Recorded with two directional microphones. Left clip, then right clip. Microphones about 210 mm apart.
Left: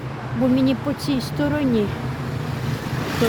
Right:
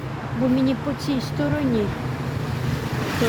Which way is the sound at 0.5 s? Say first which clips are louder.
Left 2 dB; 15° left (ahead or behind).